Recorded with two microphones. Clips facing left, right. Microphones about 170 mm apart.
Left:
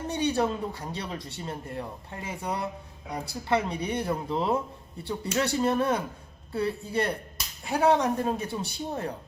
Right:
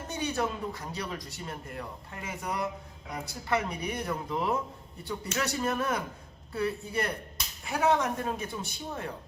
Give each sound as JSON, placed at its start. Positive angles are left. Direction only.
{"t": 0.1, "sound": "speech", "side_deg": 30}